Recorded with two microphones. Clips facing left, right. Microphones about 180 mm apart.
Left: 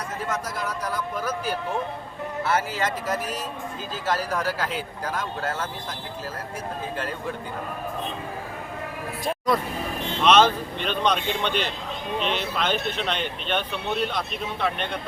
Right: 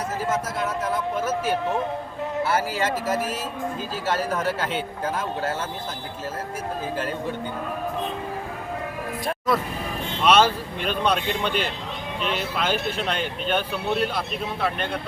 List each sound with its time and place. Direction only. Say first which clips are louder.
0.9 s speech: right 3 dB; 25° right (ahead or behind)
2.5 s speech: left 1 dB; 30° right (ahead or behind)
4.0 s speech: right 1 dB; 25° right (ahead or behind)
9.5 s speech: even; centre (ahead or behind)